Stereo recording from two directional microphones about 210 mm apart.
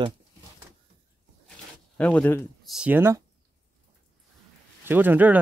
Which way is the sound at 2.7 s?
5° right (ahead or behind).